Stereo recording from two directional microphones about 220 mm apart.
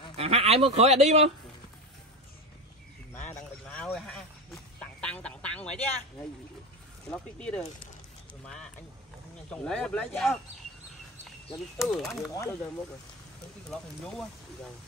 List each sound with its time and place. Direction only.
0.1 s speech: 25° right (ahead or behind)
3.3 s speech: 5° left (ahead or behind)
5.0 s quack: 5° left (ahead or behind)
7.1 s speech: 5° left (ahead or behind)
9.5 s speech: 5° left (ahead or behind)
11.4 s speech: centre (ahead or behind)